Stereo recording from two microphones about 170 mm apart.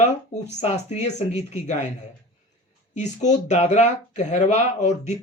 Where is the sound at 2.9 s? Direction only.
45° left (ahead or behind).